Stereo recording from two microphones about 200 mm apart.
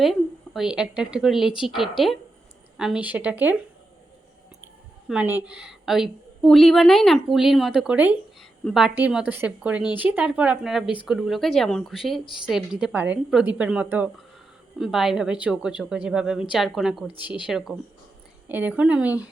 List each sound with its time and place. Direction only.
0.0 s a woman's voice: centre (ahead or behind)
5.0 s a woman's voice: 5° right (ahead or behind)
17.2 s speech: 25° left (ahead or behind)
17.4 s a woman's voice: centre (ahead or behind)